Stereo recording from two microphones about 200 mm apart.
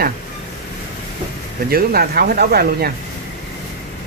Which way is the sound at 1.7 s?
50° right (ahead or behind).